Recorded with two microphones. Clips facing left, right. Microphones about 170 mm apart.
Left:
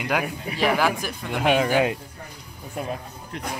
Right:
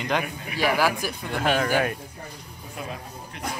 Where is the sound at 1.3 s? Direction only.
15° left (ahead or behind).